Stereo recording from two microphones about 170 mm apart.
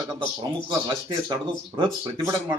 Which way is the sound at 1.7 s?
30° right (ahead or behind).